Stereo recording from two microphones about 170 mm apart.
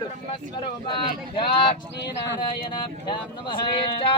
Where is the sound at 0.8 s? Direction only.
30° left (ahead or behind).